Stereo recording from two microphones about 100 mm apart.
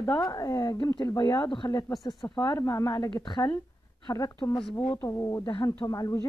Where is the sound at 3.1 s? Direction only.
50° left (ahead or behind).